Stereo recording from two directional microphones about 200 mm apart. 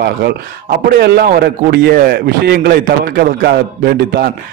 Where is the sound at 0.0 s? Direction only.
50° right (ahead or behind).